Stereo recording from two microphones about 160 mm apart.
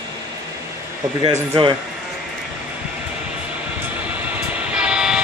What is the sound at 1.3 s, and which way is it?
Speech, 35° right (ahead or behind).